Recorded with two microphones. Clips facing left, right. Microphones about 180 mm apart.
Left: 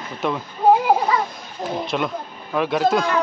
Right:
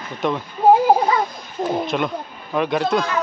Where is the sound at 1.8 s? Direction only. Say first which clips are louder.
Right 1 dB; centre (ahead or behind).